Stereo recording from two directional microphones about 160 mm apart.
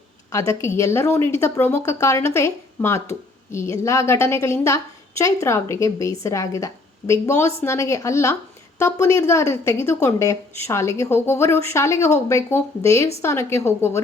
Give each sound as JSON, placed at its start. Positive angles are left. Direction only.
{"t": 0.3, "sound": "speech", "side_deg": 20}